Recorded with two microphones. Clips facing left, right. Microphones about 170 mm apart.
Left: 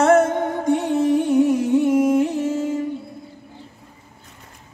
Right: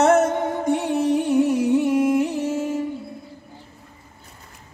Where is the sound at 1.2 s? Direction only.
20° left (ahead or behind).